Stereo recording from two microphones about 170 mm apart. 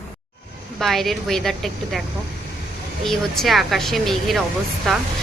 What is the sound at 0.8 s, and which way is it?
Speech, centre (ahead or behind).